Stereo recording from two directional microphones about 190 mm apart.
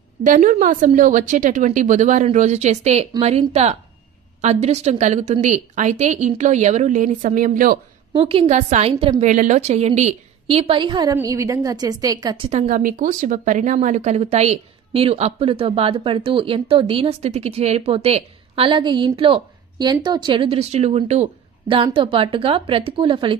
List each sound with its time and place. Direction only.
0.2 s speech: 45° right (ahead or behind)
8.1 s speech: 30° right (ahead or behind)
12.4 s speech: 40° right (ahead or behind)